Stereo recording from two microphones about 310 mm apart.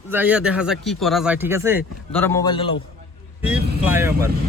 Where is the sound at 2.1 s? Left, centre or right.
Centre.